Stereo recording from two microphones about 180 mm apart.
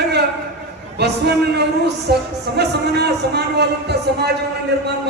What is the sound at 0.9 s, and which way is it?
A man's voice, 65° right (ahead or behind).